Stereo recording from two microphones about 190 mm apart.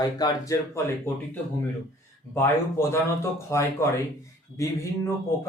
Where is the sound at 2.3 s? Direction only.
15° left (ahead or behind).